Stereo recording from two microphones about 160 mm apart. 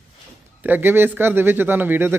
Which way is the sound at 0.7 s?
15° right (ahead or behind).